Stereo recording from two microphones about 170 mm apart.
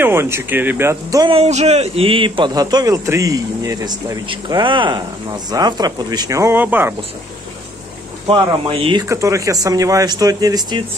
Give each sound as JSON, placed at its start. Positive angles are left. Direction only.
{"t": 0.0, "sound": "speech", "side_deg": -15}
{"t": 1.2, "sound": "a man's voice", "side_deg": -35}
{"t": 8.3, "sound": "a man's voice", "side_deg": -30}
{"t": 9.1, "sound": "a man's voice", "side_deg": -20}